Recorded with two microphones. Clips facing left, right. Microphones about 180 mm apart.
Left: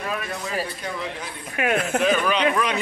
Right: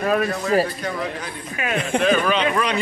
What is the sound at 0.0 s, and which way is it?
Speech, 55° right (ahead or behind).